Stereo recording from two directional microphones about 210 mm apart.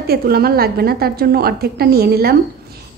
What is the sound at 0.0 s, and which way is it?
A woman's voice, 45° right (ahead or behind).